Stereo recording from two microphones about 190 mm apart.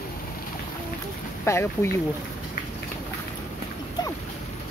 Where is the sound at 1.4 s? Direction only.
15° left (ahead or behind).